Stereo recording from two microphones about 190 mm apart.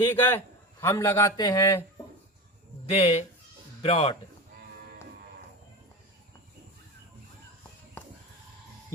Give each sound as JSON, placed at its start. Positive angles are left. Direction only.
{"t": 0.0, "sound": "a man's voice", "side_deg": 10}
{"t": 2.8, "sound": "speech", "side_deg": 30}